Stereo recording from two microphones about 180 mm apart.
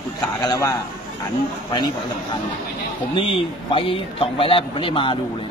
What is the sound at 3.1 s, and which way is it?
A man's voice, 30° left (ahead or behind).